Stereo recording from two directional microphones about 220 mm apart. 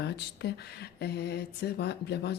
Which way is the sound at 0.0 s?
50° left (ahead or behind).